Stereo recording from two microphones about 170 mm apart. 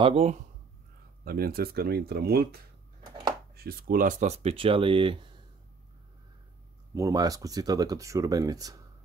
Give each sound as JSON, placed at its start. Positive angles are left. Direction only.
{"t": 0.0, "sound": "speech", "side_deg": -35}
{"t": 1.2, "sound": "speech", "side_deg": -60}
{"t": 6.9, "sound": "speech", "side_deg": -20}